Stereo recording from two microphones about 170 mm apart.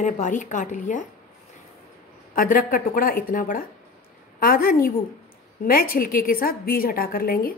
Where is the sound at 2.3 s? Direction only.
55° left (ahead or behind).